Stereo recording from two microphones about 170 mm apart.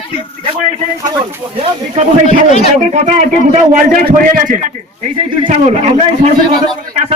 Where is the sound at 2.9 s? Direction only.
45° right (ahead or behind).